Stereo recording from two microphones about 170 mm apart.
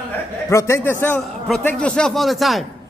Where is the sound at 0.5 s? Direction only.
15° left (ahead or behind); by 2.6 s centre (ahead or behind).